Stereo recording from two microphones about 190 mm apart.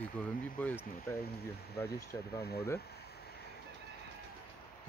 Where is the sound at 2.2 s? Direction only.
55° left (ahead or behind).